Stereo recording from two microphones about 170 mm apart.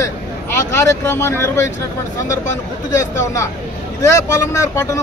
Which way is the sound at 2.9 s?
20° left (ahead or behind).